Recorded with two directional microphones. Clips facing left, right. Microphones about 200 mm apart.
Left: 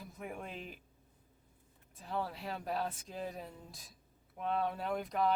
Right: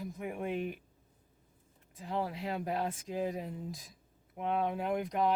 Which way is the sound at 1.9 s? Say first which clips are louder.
Right 3 dB; 15° right (ahead or behind).